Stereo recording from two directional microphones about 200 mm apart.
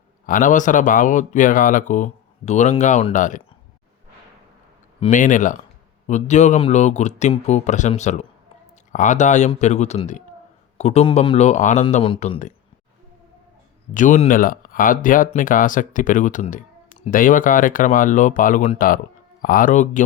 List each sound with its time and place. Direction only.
0.3 s speech: 40° left (ahead or behind)
5.1 s speech: 40° left (ahead or behind)
13.9 s speech: 40° left (ahead or behind)